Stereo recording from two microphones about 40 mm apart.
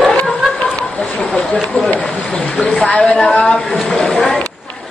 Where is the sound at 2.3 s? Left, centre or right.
Left.